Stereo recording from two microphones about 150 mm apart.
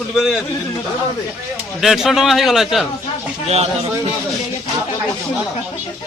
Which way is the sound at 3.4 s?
45° right (ahead or behind).